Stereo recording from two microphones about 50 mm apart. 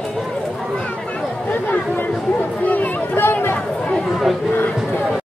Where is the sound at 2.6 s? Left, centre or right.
Left.